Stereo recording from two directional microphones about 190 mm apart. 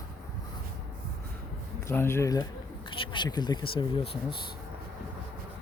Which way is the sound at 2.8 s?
25° left (ahead or behind).